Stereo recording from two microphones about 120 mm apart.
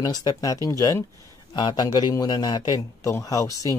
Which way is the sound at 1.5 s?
35° left (ahead or behind).